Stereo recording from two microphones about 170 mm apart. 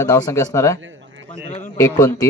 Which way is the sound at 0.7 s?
90° right.